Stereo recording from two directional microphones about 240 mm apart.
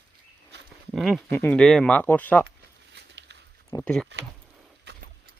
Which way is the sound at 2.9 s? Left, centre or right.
Right.